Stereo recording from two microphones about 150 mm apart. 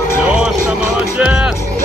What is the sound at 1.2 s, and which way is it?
Music, 5° right (ahead or behind).